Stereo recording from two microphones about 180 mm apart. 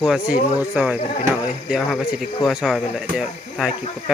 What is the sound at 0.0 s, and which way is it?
Speech, centre (ahead or behind).